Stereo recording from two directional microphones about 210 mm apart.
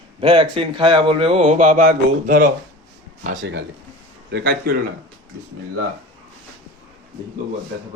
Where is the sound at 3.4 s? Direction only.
55° right (ahead or behind).